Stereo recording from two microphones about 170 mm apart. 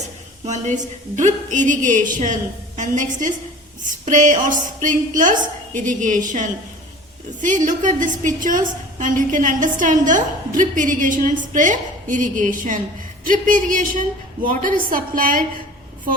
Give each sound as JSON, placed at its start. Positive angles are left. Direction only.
{"t": 0.4, "sound": "a woman's voice", "side_deg": -45}